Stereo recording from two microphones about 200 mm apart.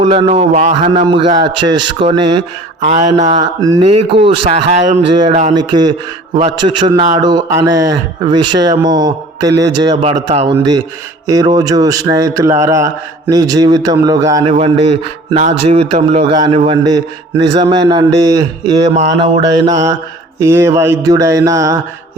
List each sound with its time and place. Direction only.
0.0 s speech: 30° right (ahead or behind)
0.9 s speech: 25° right (ahead or behind)
2.9 s speech: 40° right (ahead or behind)
3.6 s a man's voice: 15° right (ahead or behind)
3.8 s speech: 30° right (ahead or behind)
5.5 s a man's voice: 20° right (ahead or behind)
14.5 s a man's voice: 30° right (ahead or behind)